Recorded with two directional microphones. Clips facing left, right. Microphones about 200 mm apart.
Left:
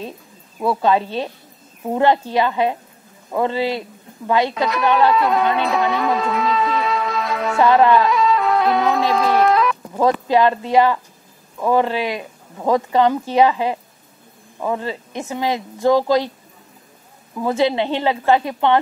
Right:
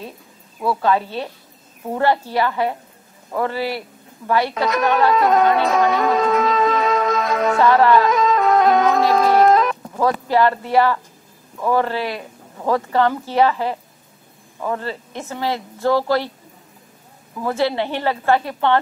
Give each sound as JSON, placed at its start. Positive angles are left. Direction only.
{"t": 0.6, "sound": "a woman's voice", "side_deg": 20}
{"t": 4.6, "sound": "music", "side_deg": -45}
{"t": 7.6, "sound": "speech", "side_deg": 20}
{"t": 8.1, "sound": "music", "side_deg": -45}
{"t": 10.2, "sound": "speech", "side_deg": 20}
{"t": 17.4, "sound": "speech", "side_deg": 15}